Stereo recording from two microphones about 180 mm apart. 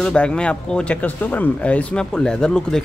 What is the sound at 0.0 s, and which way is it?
Speech, 5° left (ahead or behind).